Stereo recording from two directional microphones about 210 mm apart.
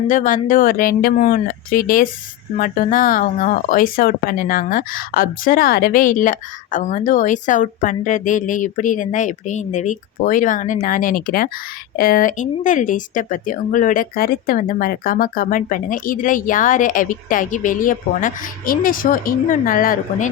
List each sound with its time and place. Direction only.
0.1 s speech: 40° left (ahead or behind)